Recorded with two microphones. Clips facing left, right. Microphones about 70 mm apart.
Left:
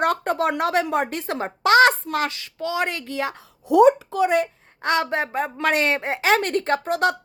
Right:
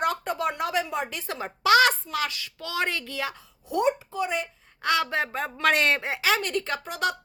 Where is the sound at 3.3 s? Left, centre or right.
Left.